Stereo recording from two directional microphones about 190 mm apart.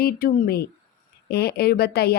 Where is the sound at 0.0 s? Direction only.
50° left (ahead or behind).